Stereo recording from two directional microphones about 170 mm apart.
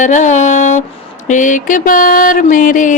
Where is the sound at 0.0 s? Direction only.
45° left (ahead or behind).